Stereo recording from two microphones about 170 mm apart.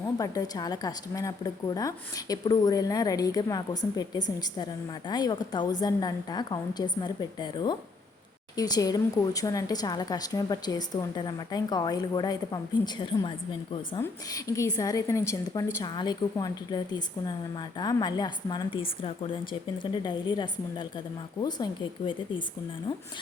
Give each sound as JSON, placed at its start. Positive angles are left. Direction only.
{"t": 0.2, "sound": "a woman's voice", "side_deg": 20}